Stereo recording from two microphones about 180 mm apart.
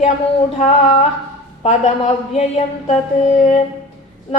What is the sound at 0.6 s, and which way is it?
Speech, 35° left (ahead or behind).